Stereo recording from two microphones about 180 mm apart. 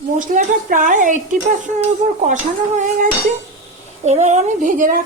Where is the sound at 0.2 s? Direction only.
45° right (ahead or behind).